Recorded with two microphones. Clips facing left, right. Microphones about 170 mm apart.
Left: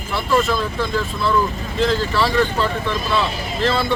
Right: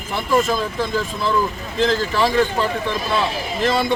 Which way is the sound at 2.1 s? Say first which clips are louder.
Right 1 dB; 15° right (ahead or behind).